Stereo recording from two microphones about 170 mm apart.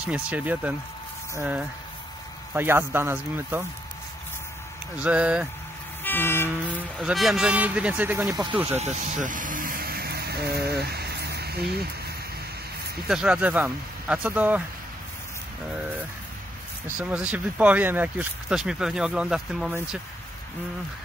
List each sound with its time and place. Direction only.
0.0 s speech: 5° right (ahead or behind)
4.9 s speech: 5° right (ahead or behind)
6.0 s vehicle: 15° left (ahead or behind)
7.0 s speech: centre (ahead or behind); by 8.5 s 20° right (ahead or behind)
8.7 s vehicle: 45° right (ahead or behind); by 11.9 s 70° right (ahead or behind)
13.1 s speech: 5° right (ahead or behind)
17.0 s speech: 5° right (ahead or behind)